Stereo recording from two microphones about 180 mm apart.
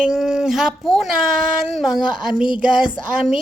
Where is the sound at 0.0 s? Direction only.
5° right (ahead or behind).